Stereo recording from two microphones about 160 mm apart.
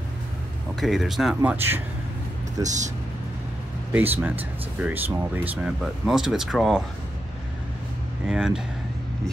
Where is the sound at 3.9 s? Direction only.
10° right (ahead or behind).